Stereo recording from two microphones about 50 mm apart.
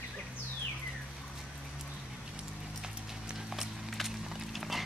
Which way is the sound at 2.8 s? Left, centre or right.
Centre.